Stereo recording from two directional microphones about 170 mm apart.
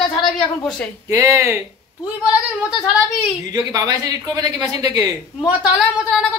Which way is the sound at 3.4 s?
20° right (ahead or behind).